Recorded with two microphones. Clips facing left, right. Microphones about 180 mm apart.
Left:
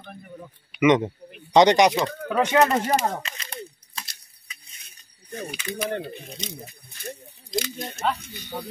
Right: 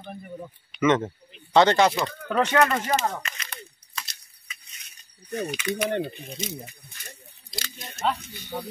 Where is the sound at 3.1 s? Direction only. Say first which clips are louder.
Left 3 dB; 30° left (ahead or behind).